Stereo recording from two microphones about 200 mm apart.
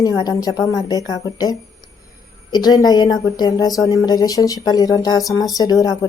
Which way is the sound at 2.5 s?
20° left (ahead or behind).